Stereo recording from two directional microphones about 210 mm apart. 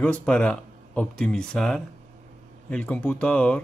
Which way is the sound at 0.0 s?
5° left (ahead or behind).